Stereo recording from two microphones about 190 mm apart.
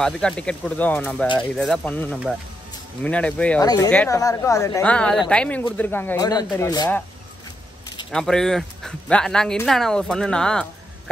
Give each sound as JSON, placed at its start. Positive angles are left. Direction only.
{"t": 0.0, "sound": "speech", "side_deg": 5}
{"t": 3.6, "sound": "speech", "side_deg": 20}
{"t": 3.9, "sound": "speech", "side_deg": 10}
{"t": 8.1, "sound": "speech", "side_deg": 5}